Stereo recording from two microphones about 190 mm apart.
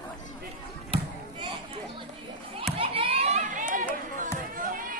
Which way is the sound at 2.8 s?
30° right (ahead or behind).